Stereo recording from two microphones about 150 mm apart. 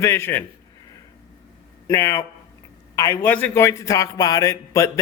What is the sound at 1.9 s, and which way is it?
A man's voice, 20° left (ahead or behind).